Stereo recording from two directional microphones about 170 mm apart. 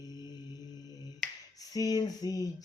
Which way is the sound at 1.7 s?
20° left (ahead or behind).